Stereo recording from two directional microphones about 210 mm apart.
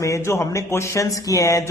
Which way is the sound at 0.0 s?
15° left (ahead or behind).